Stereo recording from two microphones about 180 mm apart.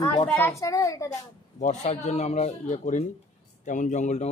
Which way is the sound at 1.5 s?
40° left (ahead or behind).